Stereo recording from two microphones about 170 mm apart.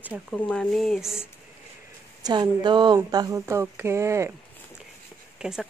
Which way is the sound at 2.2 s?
25° right (ahead or behind).